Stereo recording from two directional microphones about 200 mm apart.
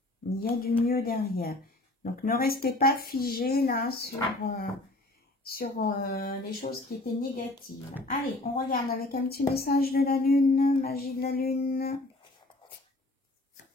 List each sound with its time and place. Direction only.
0.4 s speech: 50° left (ahead or behind)
5.4 s speech: 50° left (ahead or behind)